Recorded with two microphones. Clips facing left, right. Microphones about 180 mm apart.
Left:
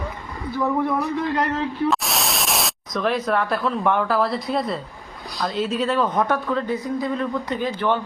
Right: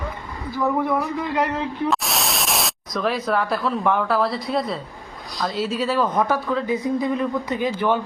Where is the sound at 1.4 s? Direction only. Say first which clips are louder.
Right 1 dB; 10° right (ahead or behind).